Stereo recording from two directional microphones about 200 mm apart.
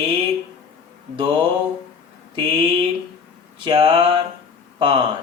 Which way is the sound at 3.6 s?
25° right (ahead or behind).